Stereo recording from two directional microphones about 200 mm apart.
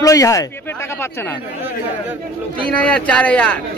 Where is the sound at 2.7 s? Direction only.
5° left (ahead or behind).